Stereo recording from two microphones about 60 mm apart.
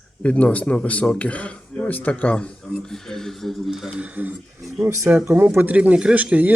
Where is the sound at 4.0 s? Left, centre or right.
Right.